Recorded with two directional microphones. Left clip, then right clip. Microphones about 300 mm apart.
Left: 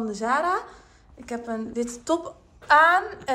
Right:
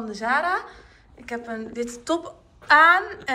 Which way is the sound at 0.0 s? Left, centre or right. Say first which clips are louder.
Right 1 dB; centre.